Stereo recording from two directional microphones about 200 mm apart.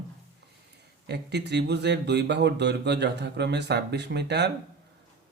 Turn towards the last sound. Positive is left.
turn(degrees=-55)  # may be behind; listen again after turning